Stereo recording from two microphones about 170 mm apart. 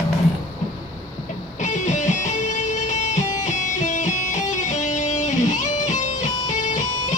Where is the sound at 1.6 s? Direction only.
45° left (ahead or behind).